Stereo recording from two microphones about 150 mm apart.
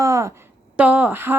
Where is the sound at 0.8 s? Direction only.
10° right (ahead or behind).